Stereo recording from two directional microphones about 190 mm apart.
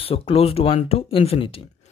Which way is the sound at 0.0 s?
30° left (ahead or behind).